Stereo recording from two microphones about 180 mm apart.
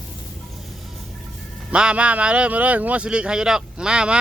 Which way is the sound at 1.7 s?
5° right (ahead or behind).